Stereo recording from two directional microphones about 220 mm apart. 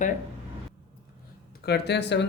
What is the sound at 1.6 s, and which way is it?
Speech, 50° left (ahead or behind).